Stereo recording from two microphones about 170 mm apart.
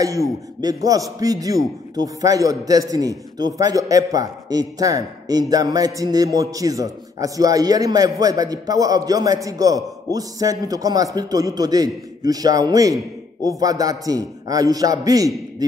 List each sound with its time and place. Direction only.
0.0 s a man's voice: 20° right (ahead or behind)